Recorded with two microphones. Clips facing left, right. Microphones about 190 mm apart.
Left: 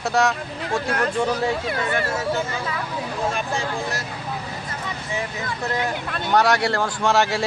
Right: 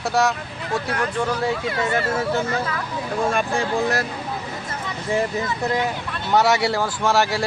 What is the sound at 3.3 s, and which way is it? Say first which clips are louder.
Speech: right 4 dB; 55° right (ahead or behind).